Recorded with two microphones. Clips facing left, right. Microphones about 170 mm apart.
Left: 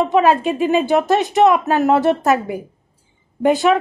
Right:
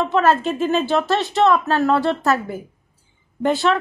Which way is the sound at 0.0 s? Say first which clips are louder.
Left 3 dB; 15° left (ahead or behind).